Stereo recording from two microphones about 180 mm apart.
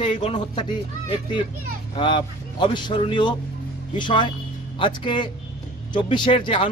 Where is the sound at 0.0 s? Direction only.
30° left (ahead or behind).